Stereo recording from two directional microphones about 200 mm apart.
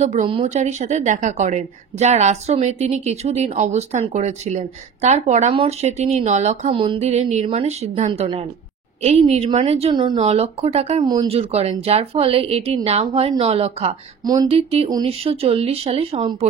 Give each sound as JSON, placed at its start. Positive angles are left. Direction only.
{"t": 0.0, "sound": "a woman's voice", "side_deg": -35}
{"t": 14.2, "sound": "a woman's voice", "side_deg": -20}